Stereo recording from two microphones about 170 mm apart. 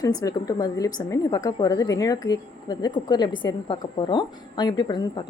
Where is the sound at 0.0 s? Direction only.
20° left (ahead or behind).